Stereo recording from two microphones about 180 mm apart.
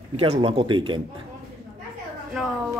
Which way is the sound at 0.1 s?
35° right (ahead or behind).